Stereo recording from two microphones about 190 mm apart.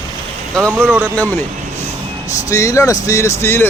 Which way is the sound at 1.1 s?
10° left (ahead or behind).